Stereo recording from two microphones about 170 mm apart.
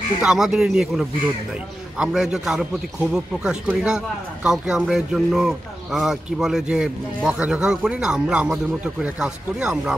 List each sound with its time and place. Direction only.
0.2 s a man's voice: 5° right (ahead or behind)